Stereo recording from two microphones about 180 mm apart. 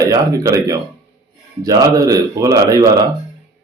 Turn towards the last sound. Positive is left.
turn(degrees=-20)  # may be behind; listen again after turning